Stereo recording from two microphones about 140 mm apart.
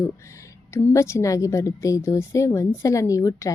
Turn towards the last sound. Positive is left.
turn(degrees=20)  # may be behind; listen again after turning